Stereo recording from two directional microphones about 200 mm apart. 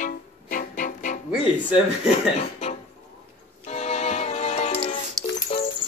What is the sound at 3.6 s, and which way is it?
Music, 35° left (ahead or behind).